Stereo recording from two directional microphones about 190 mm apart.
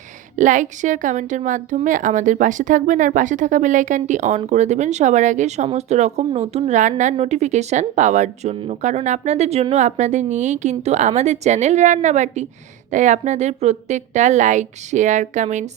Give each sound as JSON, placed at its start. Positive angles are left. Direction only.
{"t": 0.3, "sound": "a woman's voice", "side_deg": -40}